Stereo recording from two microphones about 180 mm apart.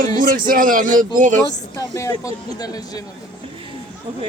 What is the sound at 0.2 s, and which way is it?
Speech, 50° right (ahead or behind).